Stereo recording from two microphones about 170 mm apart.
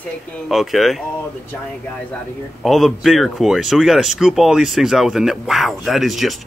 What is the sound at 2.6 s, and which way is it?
Speech, centre (ahead or behind).